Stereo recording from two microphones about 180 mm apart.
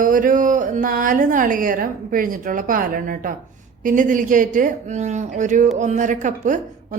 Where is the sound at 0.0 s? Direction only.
50° right (ahead or behind).